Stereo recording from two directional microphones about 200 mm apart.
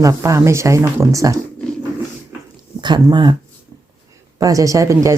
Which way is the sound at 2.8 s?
20° right (ahead or behind).